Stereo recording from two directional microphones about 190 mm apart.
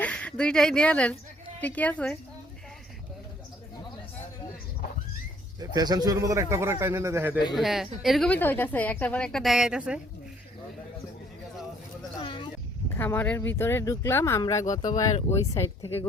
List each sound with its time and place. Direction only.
0.0 s speech: 5° left (ahead or behind)
5.5 s speech: 20° right (ahead or behind)
7.5 s a woman's voice: centre (ahead or behind)
12.2 s a sound: 25° left (ahead or behind)
13.0 s speech: 10° left (ahead or behind)